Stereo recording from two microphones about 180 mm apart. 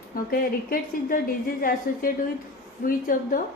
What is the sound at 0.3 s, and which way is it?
A woman's voice, 55° left (ahead or behind).